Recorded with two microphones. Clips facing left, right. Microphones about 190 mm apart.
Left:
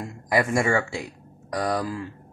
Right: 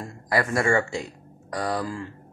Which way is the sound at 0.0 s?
20° left (ahead or behind).